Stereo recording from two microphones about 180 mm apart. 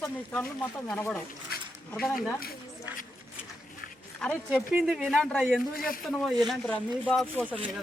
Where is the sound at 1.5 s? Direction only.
60° left (ahead or behind).